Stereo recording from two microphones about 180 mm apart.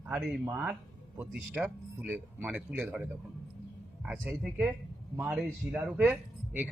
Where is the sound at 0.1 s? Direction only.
5° right (ahead or behind).